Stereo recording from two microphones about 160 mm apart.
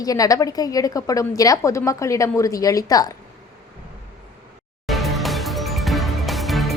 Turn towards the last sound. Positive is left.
turn(degrees=0)  # may be behind; listen again after turning